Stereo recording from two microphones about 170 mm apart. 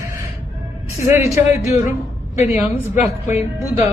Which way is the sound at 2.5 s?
10° right (ahead or behind).